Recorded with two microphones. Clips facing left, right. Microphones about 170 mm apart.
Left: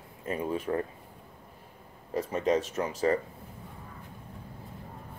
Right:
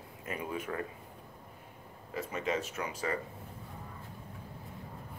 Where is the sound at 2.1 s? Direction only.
40° left (ahead or behind).